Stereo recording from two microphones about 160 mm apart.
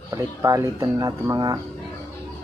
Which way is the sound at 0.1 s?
20° right (ahead or behind).